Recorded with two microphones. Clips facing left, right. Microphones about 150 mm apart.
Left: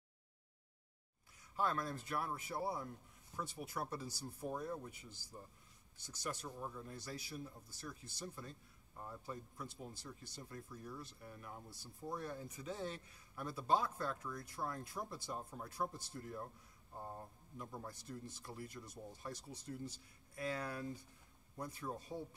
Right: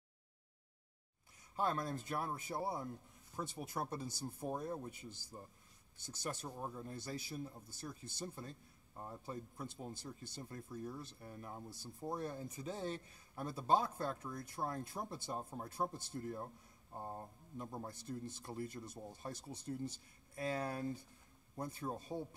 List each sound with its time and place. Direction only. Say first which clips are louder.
1.6 s speech: right 1 dB; 25° right (ahead or behind)